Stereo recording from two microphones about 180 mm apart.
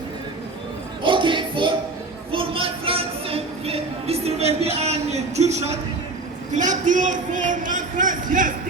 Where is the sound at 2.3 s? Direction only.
30° right (ahead or behind).